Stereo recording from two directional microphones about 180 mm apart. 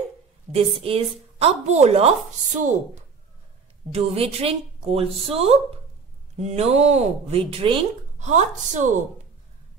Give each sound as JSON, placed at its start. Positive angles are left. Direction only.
{"t": 0.5, "sound": "a woman's voice", "side_deg": -35}
{"t": 8.2, "sound": "a woman's voice", "side_deg": -40}